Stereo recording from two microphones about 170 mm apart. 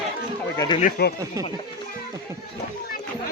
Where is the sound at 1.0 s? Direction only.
70° left (ahead or behind).